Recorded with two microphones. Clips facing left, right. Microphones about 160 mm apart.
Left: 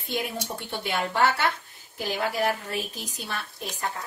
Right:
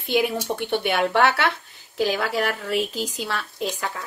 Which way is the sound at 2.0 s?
90° right.